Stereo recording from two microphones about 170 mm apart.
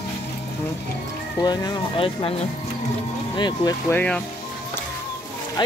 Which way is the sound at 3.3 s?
25° left (ahead or behind).